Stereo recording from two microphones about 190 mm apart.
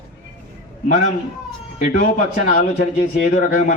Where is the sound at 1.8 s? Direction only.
45° left (ahead or behind).